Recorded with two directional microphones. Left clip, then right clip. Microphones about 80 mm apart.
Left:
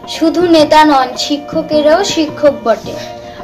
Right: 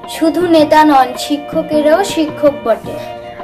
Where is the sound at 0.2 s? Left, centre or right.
Centre.